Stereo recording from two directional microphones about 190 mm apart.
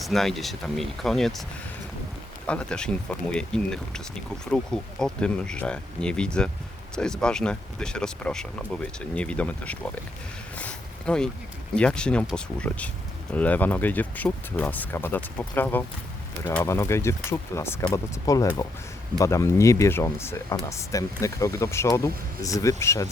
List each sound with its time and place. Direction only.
0.0 s speech: centre (ahead or behind)
2.5 s speech: 5° left (ahead or behind)
10.6 s a sound: 5° left (ahead or behind)
11.7 s speech: 5° left (ahead or behind)